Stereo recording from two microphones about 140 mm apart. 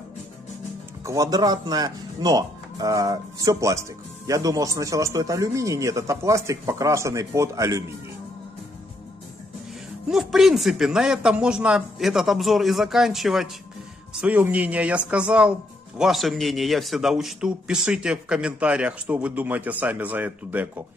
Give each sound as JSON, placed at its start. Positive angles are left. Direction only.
{"t": 1.0, "sound": "speech", "side_deg": -25}
{"t": 10.0, "sound": "a man's voice", "side_deg": -5}